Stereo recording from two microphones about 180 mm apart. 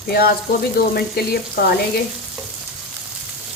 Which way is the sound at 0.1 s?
60° left (ahead or behind).